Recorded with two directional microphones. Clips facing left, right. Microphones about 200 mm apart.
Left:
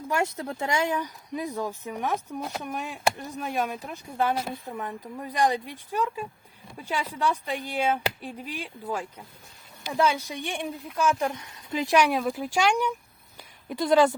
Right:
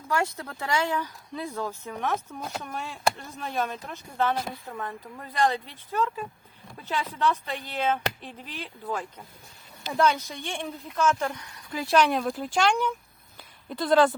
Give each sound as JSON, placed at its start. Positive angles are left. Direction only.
{"t": 0.1, "sound": "speech", "side_deg": 20}
{"t": 2.1, "sound": "speech", "side_deg": 0}
{"t": 2.6, "sound": "speech", "side_deg": 15}